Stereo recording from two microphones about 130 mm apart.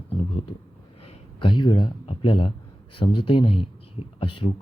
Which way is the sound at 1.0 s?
40° left (ahead or behind).